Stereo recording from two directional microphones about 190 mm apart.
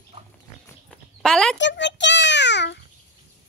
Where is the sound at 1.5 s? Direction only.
70° left (ahead or behind).